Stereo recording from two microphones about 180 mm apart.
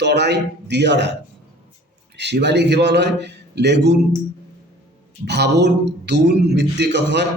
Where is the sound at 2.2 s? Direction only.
70° right (ahead or behind).